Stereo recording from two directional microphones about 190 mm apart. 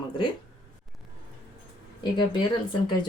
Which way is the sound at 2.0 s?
25° left (ahead or behind).